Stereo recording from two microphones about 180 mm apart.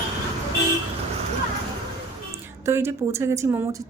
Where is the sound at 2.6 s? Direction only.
15° right (ahead or behind).